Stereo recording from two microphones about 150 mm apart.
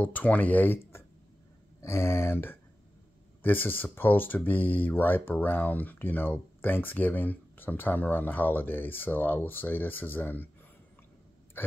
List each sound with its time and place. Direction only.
0.0 s speech: 10° left (ahead or behind)